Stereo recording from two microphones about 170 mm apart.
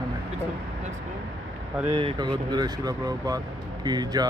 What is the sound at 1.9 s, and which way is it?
Speech, 30° right (ahead or behind).